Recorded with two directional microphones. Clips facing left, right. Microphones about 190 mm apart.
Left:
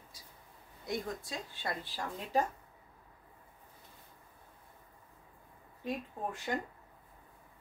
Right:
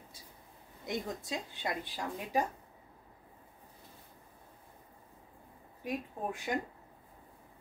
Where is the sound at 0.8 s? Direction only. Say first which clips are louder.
Right 1 dB; 20° right (ahead or behind).